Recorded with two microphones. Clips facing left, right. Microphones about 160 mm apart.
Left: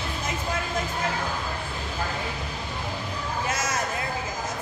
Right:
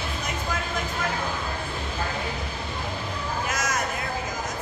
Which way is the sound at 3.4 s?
30° left (ahead or behind).